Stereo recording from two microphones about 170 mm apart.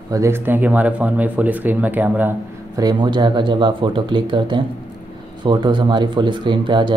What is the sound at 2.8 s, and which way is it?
Speech, 25° right (ahead or behind).